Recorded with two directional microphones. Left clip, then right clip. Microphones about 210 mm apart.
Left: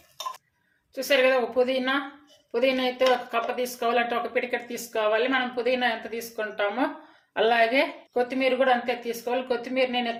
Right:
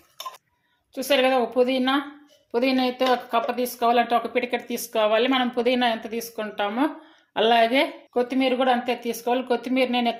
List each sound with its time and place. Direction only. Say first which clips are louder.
0.9 s speech: right 1 dB; 30° right (ahead or behind)